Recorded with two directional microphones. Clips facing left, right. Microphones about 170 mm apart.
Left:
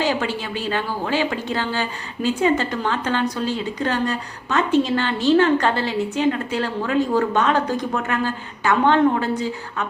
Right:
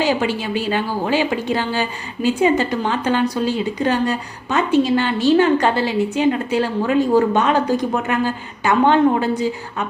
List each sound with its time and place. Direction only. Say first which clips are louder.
0.0 s a woman's voice: right 3 dB; 10° right (ahead or behind)